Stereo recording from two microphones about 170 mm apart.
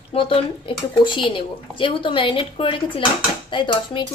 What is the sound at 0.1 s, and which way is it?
Speech, 30° left (ahead or behind).